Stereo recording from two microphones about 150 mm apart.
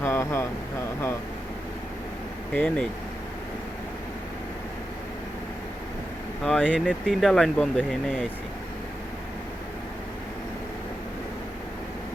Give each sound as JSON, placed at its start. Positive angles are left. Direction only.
{"t": 0.0, "sound": "a sound", "side_deg": 15}
{"t": 2.5, "sound": "speech", "side_deg": 10}
{"t": 6.4, "sound": "speech", "side_deg": 5}